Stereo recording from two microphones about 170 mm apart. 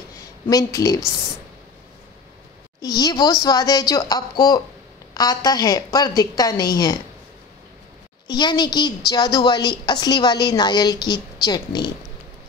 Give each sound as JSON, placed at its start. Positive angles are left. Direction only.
{"t": 0.5, "sound": "a woman's voice", "side_deg": 20}
{"t": 2.8, "sound": "a woman's voice", "side_deg": 25}
{"t": 8.3, "sound": "a woman's voice", "side_deg": 25}